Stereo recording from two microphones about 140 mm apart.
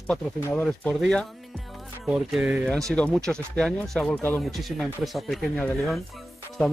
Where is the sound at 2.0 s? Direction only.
10° right (ahead or behind).